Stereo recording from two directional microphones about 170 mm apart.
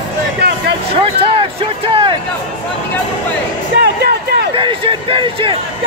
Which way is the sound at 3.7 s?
70° right (ahead or behind).